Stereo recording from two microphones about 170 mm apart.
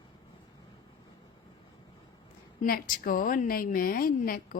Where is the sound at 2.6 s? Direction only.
60° left (ahead or behind).